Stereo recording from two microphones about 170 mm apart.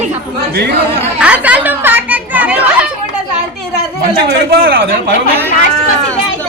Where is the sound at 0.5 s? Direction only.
70° right (ahead or behind).